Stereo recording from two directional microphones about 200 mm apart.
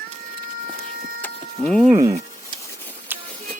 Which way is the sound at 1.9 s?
15° right (ahead or behind).